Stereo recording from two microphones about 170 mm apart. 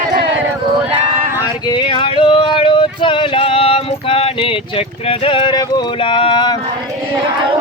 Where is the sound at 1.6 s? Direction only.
25° left (ahead or behind).